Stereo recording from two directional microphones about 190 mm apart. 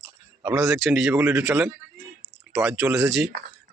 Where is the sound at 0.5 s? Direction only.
Centre (ahead or behind).